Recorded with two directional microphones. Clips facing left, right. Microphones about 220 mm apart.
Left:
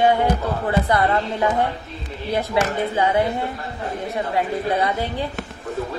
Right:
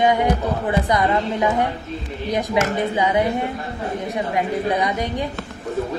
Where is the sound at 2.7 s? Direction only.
15° right (ahead or behind).